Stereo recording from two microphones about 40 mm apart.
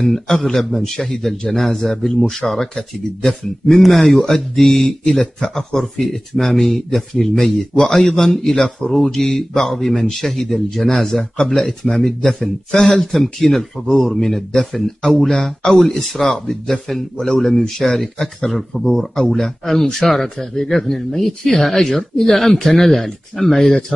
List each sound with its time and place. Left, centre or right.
0.0 s speech: centre
11.3 s speech: left
11.6 s speech: centre